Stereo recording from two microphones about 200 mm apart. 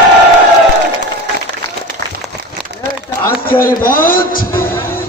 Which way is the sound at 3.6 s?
45° left (ahead or behind).